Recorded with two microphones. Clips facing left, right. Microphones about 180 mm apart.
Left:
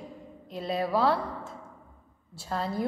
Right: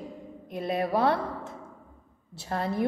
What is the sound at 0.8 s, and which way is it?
Speech, 20° right (ahead or behind).